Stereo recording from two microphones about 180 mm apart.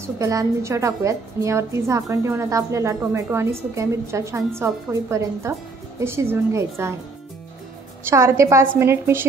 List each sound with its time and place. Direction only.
0.0 s a woman's voice: 15° right (ahead or behind)
8.1 s a woman's voice: 15° right (ahead or behind)